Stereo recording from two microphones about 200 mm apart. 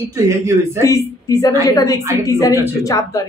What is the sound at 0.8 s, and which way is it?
Speech, 15° left (ahead or behind).